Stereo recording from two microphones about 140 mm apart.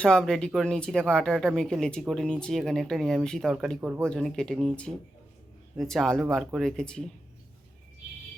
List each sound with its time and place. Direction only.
0.0 s speech: 5° left (ahead or behind)